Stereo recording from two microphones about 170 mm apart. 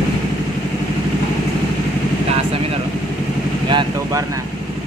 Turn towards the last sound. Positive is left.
turn(degrees=-30)  # may be behind; listen again after turning